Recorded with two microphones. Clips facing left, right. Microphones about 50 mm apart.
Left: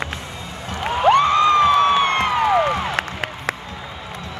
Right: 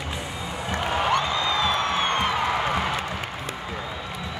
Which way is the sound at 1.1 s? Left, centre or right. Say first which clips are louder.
Left 8 dB; left.